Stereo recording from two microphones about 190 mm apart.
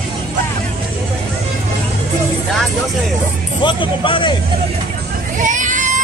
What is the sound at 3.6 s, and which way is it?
Speech, 25° left (ahead or behind).